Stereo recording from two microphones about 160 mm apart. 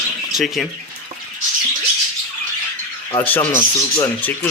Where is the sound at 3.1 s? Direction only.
10° left (ahead or behind).